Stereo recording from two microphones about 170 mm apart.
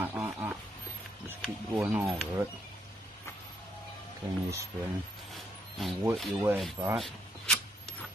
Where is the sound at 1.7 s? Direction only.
10° right (ahead or behind).